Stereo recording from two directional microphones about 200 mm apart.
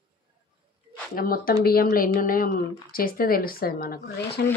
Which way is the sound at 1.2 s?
45° left (ahead or behind).